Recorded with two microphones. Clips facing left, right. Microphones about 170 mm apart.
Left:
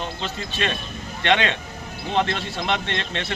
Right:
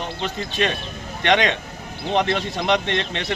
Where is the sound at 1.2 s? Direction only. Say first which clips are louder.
Right 2 dB; 15° right (ahead or behind).